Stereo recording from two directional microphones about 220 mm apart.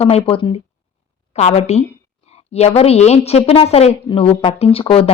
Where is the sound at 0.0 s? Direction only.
25° left (ahead or behind).